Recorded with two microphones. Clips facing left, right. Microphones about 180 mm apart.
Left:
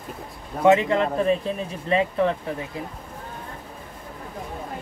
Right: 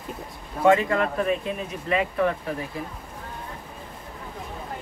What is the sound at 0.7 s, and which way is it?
A man's voice, 20° left (ahead or behind).